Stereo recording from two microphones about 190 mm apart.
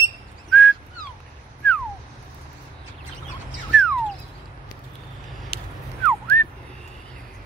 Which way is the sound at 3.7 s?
5° left (ahead or behind).